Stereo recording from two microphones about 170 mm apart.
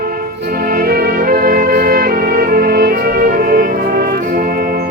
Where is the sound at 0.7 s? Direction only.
65° right (ahead or behind).